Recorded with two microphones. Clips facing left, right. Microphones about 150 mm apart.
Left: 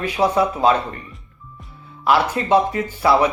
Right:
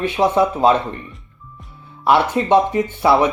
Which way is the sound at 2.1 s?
25° right (ahead or behind).